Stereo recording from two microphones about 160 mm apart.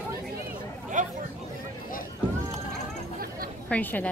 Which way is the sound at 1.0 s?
55° right (ahead or behind).